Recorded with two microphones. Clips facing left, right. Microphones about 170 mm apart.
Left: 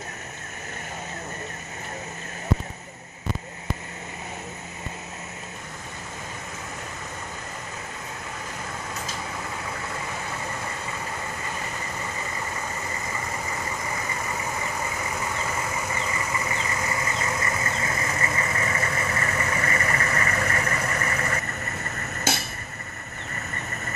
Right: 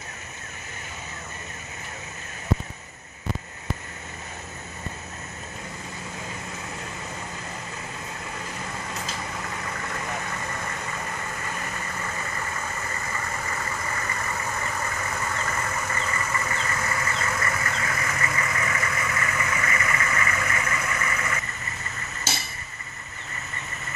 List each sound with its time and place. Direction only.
15.0 s vehicle: 10° left (ahead or behind); by 21.4 s 40° left (ahead or behind)